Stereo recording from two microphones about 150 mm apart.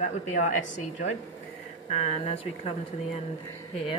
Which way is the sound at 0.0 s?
55° left (ahead or behind).